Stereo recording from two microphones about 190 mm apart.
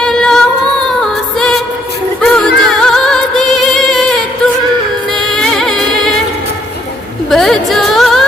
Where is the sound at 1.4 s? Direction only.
Centre (ahead or behind).